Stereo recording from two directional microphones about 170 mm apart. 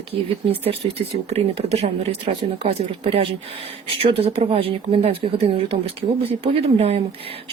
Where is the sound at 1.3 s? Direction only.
35° right (ahead or behind).